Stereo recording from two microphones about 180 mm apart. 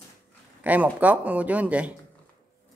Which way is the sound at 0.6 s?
10° right (ahead or behind).